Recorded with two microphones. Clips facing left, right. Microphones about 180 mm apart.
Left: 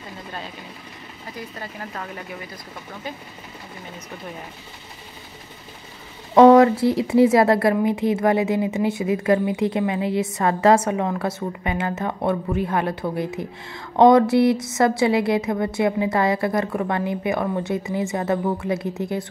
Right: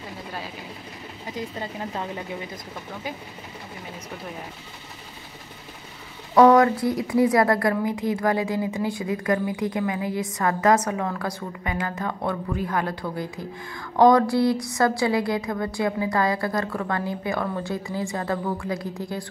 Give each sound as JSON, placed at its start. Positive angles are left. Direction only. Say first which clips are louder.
{"t": 1.3, "sound": "speech", "louder": "right 3 dB", "side_deg": -20}
{"t": 6.3, "sound": "a sound", "louder": "left 4 dB", "side_deg": 25}
{"t": 6.8, "sound": "a woman's voice", "louder": "left 4 dB", "side_deg": 25}